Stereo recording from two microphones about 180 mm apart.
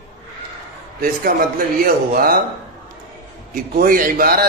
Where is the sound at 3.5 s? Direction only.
50° right (ahead or behind).